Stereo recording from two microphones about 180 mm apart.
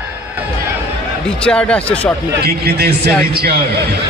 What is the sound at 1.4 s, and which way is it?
Speech, 5° left (ahead or behind).